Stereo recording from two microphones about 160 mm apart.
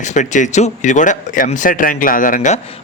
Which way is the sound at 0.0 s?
50° left (ahead or behind).